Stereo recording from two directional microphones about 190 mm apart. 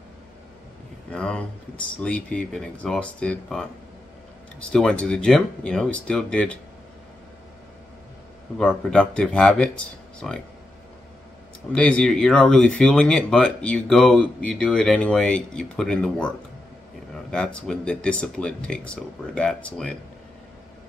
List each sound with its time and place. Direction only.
1.1 s speech: 5° left (ahead or behind)
8.5 s speech: 5° left (ahead or behind)
11.7 s speech: 5° left (ahead or behind)